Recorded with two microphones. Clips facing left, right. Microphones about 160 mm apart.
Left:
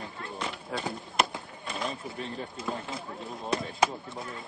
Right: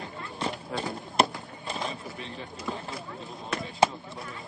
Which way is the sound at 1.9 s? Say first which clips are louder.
Left 2 dB; 40° left (ahead or behind).